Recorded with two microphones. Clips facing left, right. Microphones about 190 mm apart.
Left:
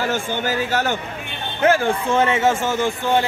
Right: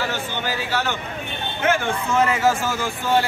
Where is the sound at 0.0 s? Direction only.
45° left (ahead or behind).